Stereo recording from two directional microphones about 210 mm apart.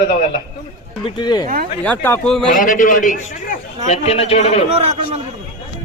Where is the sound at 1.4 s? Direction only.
40° right (ahead or behind).